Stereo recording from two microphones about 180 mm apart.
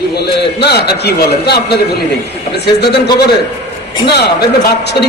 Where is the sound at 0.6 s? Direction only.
65° left (ahead or behind).